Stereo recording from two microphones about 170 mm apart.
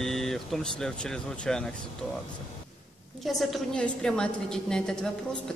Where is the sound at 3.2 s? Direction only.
Centre (ahead or behind).